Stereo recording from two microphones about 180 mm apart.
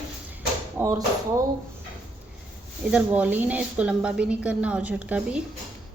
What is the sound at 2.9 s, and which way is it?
Speech, 10° right (ahead or behind).